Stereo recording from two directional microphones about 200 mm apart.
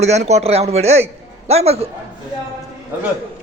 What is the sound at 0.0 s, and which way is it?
Speech, 35° right (ahead or behind).